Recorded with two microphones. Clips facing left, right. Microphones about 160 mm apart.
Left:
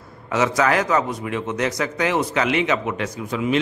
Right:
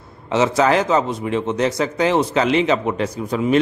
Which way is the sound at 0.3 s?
25° right (ahead or behind).